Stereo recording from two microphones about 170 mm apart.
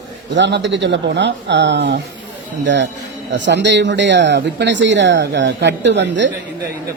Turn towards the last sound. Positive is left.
turn(degrees=-90)